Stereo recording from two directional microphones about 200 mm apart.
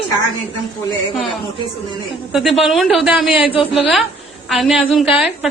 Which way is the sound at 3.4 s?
25° left (ahead or behind).